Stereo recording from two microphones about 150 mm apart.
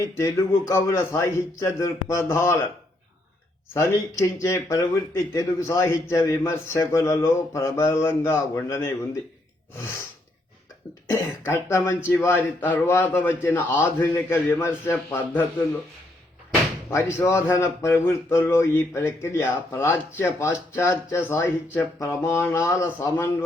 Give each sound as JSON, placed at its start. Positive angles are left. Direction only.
{"t": 0.0, "sound": "speech", "side_deg": 20}
{"t": 3.8, "sound": "speech", "side_deg": 20}
{"t": 11.1, "sound": "speech", "side_deg": 15}
{"t": 16.9, "sound": "speech", "side_deg": 15}